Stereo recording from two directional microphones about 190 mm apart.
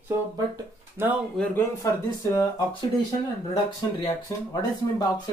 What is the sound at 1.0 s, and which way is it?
Speech, 10° right (ahead or behind).